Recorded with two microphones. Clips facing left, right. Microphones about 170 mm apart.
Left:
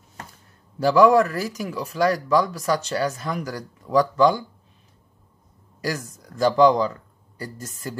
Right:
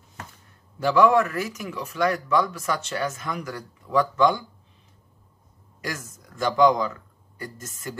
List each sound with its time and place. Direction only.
0.7 s speech: 35° left (ahead or behind)
5.8 s speech: 35° left (ahead or behind)